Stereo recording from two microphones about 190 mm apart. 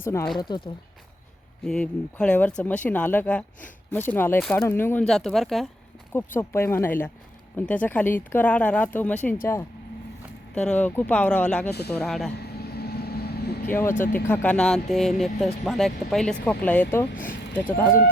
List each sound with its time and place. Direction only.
0.0 s speech: 15° left (ahead or behind)
1.6 s speech: 5° left (ahead or behind)
6.1 s speech: 10° left (ahead or behind)
10.5 s speech: 5° left (ahead or behind)
12.5 s vehicle: 55° left (ahead or behind)
13.7 s speech: 10° left (ahead or behind)
17.2 s speech: 45° left (ahead or behind)